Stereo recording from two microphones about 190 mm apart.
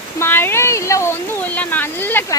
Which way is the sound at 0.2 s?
10° left (ahead or behind).